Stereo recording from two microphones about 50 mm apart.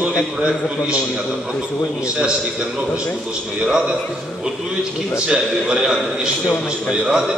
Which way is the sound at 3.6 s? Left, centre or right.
Centre.